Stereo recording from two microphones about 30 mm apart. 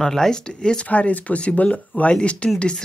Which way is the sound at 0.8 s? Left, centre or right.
Left.